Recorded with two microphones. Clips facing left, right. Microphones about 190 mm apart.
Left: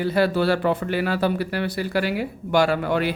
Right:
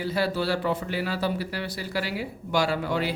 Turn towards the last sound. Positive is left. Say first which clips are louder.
# left 5 dB
turn(degrees=60)  # may be behind; listen again after turning